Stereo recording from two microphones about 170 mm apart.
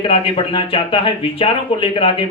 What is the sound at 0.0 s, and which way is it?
Speech, 30° left (ahead or behind).